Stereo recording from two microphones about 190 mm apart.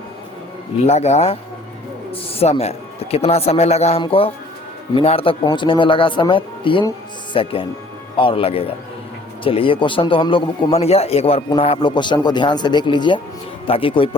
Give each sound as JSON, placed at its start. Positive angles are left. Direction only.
{"t": 0.9, "sound": "a man's voice", "side_deg": 35}